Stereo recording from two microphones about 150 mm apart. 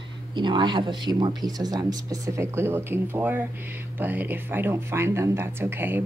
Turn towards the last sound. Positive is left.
turn(degrees=-15)  # may be behind; listen again after turning